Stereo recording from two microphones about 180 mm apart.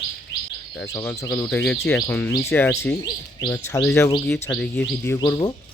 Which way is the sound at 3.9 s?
15° left (ahead or behind).